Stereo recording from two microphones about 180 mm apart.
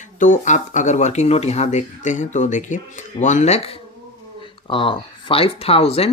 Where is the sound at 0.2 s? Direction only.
45° left (ahead or behind).